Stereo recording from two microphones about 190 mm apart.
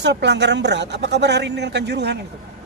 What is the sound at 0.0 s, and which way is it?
Speech, 65° right (ahead or behind).